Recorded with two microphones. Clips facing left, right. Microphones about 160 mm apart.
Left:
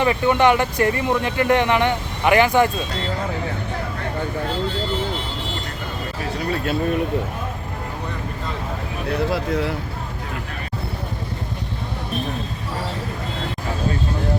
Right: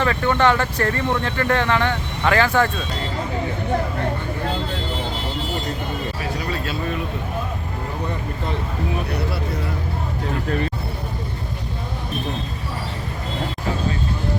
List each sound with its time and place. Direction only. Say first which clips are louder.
0.0 s speech: left 2 dB; 15° left (ahead or behind)
6.5 s speech: left 8 dB; 55° left (ahead or behind)
9.3 s speech: left 5 dB; 90° left